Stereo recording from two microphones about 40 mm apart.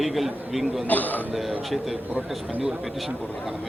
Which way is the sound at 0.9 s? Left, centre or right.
Left.